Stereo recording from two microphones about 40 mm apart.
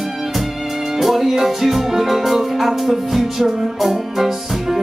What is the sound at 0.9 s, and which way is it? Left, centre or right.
Music, centre.